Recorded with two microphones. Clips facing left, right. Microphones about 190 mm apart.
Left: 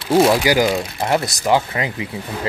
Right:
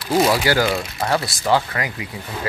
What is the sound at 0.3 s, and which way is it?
Speech, 15° left (ahead or behind).